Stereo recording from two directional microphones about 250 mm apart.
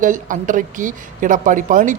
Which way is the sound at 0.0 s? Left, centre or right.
Right.